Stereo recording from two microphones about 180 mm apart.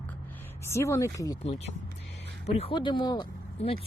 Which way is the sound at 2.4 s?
30° left (ahead or behind).